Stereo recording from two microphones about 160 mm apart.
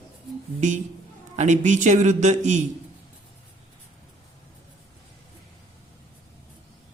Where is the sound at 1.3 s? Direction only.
45° right (ahead or behind).